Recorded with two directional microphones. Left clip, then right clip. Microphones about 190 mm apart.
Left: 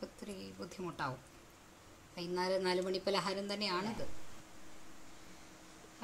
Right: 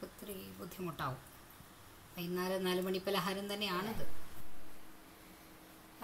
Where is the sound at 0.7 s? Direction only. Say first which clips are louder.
Even; 25° left (ahead or behind).